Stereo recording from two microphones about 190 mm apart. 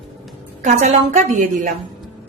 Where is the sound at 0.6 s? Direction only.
40° right (ahead or behind).